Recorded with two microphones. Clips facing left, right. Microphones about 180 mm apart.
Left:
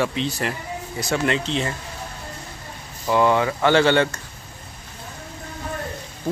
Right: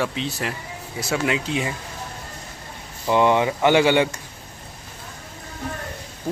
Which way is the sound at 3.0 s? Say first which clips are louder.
Even; 20° right (ahead or behind).